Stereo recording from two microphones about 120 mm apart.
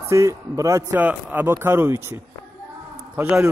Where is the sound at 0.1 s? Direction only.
25° right (ahead or behind).